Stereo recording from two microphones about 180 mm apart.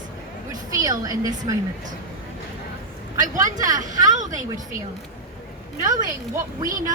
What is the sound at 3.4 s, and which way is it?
A woman's voice, 45° right (ahead or behind).